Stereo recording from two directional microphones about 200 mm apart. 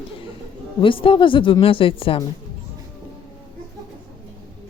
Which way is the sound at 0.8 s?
25° left (ahead or behind).